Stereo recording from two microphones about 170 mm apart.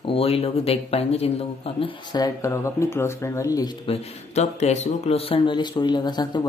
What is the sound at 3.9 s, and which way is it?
Speech, 40° left (ahead or behind).